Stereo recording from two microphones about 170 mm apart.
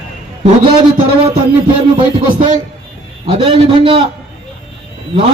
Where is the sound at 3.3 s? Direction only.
30° right (ahead or behind).